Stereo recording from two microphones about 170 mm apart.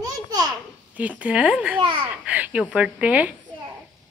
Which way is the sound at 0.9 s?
10° right (ahead or behind).